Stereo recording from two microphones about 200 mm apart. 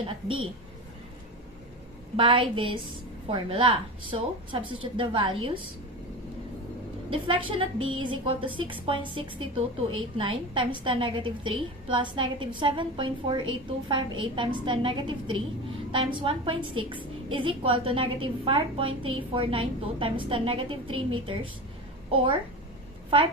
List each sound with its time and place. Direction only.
0.0 s a woman's voice: 25° right (ahead or behind)
2.1 s a woman's voice: 25° right (ahead or behind)
7.1 s a woman's voice: 25° right (ahead or behind)